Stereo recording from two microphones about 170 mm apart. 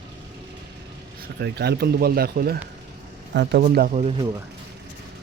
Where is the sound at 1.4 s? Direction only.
75° right (ahead or behind).